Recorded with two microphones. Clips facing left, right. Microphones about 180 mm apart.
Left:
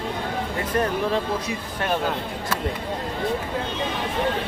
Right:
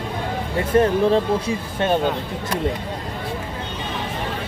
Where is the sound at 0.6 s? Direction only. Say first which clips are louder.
Right 8 dB; 30° right (ahead or behind).